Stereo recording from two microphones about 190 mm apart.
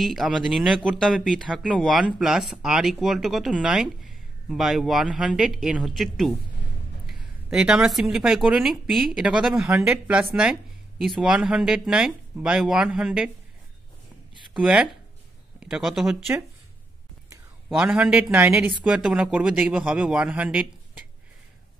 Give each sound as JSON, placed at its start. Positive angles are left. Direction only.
{"t": 0.0, "sound": "speech", "side_deg": 0}
{"t": 14.5, "sound": "speech", "side_deg": -5}
{"t": 17.6, "sound": "speech", "side_deg": -5}